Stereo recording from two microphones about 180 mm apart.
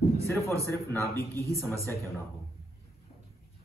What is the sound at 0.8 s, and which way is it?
Speech, 15° left (ahead or behind).